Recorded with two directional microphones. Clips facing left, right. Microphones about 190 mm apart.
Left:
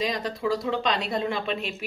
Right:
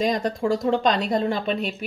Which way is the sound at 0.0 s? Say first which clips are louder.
Right 5 dB; 45° right (ahead or behind).